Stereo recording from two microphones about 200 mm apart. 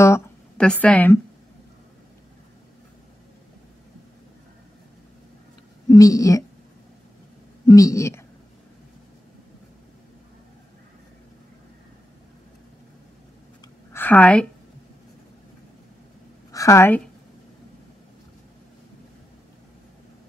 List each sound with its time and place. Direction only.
0.0 s speech: 10° left (ahead or behind)
5.9 s speech: 15° left (ahead or behind)
7.6 s speech: 15° left (ahead or behind)
13.9 s a woman's voice: 10° left (ahead or behind)
16.5 s a woman's voice: 15° left (ahead or behind)